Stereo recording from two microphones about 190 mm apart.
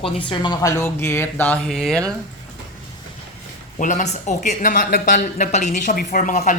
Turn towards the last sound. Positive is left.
turn(degrees=40)  # may be behind; listen again after turning